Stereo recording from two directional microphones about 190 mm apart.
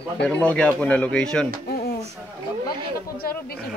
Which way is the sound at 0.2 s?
5° left (ahead or behind).